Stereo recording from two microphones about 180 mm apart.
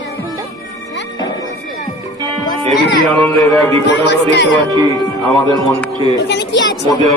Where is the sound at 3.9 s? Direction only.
70° left (ahead or behind).